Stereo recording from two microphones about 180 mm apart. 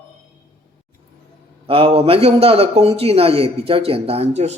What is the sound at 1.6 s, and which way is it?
A man's voice, 30° right (ahead or behind).